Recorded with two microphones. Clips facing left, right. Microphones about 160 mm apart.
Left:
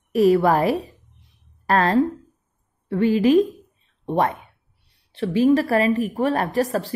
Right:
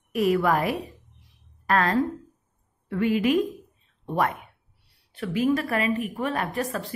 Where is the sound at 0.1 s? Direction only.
30° left (ahead or behind).